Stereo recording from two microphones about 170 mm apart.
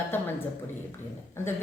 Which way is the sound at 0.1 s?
10° left (ahead or behind).